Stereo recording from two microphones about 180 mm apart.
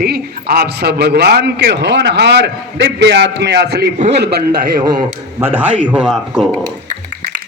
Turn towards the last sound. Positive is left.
turn(degrees=-5)  # may be behind; listen again after turning